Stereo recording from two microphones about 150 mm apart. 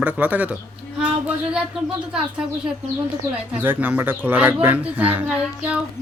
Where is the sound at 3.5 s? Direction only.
10° right (ahead or behind).